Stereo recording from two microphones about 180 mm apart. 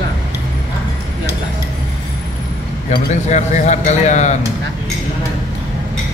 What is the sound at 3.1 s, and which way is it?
Speech, 40° left (ahead or behind).